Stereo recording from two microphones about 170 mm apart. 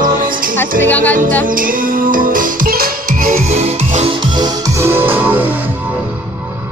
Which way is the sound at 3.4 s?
40° right (ahead or behind).